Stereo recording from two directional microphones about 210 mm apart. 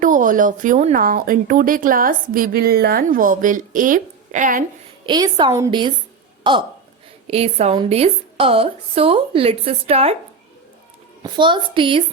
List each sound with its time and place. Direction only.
0.0 s a woman's voice: 40° right (ahead or behind)
5.0 s a woman's voice: 20° right (ahead or behind)
11.2 s a woman's voice: 20° right (ahead or behind)